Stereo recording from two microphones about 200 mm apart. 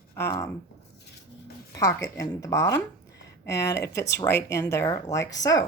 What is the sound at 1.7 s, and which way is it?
Speech, 15° left (ahead or behind).